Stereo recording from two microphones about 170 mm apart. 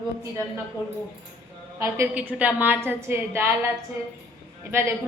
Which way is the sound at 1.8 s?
15° right (ahead or behind).